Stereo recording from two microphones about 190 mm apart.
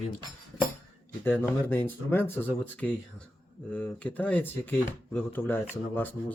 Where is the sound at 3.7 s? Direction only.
5° left (ahead or behind).